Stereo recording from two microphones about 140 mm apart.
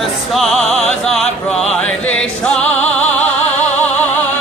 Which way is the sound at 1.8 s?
10° left (ahead or behind).